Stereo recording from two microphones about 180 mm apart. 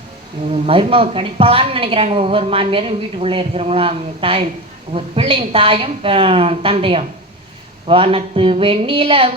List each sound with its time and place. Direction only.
0.5 s a woman's voice: 30° right (ahead or behind)